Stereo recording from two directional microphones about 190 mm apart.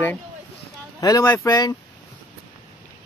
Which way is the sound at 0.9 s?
15° left (ahead or behind).